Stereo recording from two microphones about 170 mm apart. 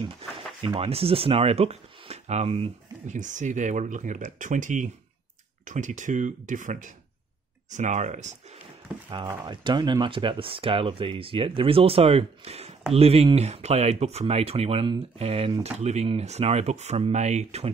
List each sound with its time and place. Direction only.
0.6 s speech: 35° right (ahead or behind)
9.1 s speech: 25° right (ahead or behind); by 17.6 s 40° right (ahead or behind)